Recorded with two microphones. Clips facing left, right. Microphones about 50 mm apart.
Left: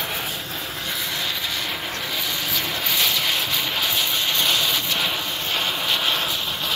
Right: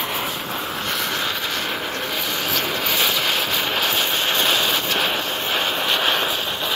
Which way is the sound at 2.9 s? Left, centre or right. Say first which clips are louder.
Right 1 dB; right.